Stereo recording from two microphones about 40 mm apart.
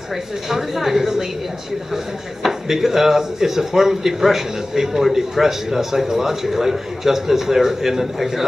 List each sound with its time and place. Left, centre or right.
0.5 s speech: centre
2.4 s speech: centre